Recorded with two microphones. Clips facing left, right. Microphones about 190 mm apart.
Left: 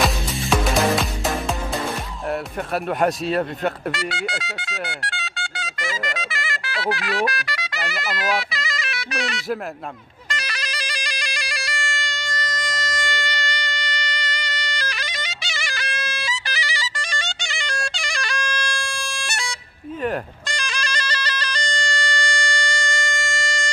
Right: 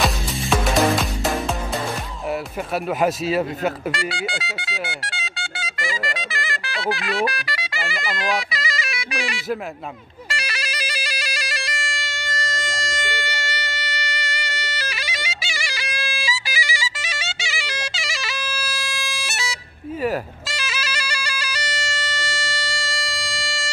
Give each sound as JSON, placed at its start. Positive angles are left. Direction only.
{"t": 0.0, "sound": "music", "side_deg": 0}
{"t": 3.0, "sound": "speech", "side_deg": -5}
{"t": 10.3, "sound": "music", "side_deg": -5}
{"t": 12.4, "sound": "music", "side_deg": -25}
{"t": 12.9, "sound": "music", "side_deg": -10}